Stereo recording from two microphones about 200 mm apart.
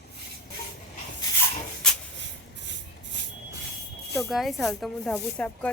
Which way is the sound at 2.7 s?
65° right (ahead or behind).